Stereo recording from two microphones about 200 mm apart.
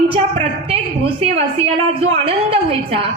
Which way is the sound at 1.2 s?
30° right (ahead or behind).